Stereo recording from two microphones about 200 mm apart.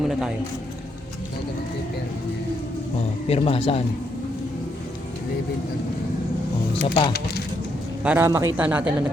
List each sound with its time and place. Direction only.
0.0 s a man's voice: centre (ahead or behind)
3.2 s speech: 30° left (ahead or behind)
6.8 s speech: 25° left (ahead or behind)
8.0 s a man's voice: 10° right (ahead or behind)